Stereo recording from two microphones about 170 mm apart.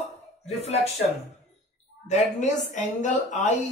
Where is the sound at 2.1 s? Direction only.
45° left (ahead or behind).